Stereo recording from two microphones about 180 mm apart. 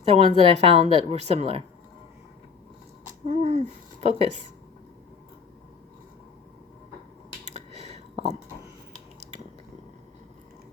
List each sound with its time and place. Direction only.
0.1 s speech: 35° right (ahead or behind)
3.2 s speech: 40° right (ahead or behind)
7.5 s a sound: 35° right (ahead or behind)